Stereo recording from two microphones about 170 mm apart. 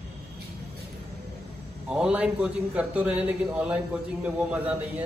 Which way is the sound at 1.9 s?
5° right (ahead or behind).